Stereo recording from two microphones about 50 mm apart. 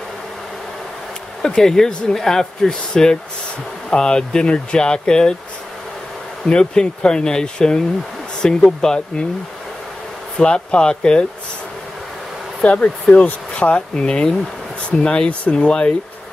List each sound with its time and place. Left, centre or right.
1.4 s speech: centre
6.4 s speech: centre
10.4 s speech: centre
12.6 s speech: left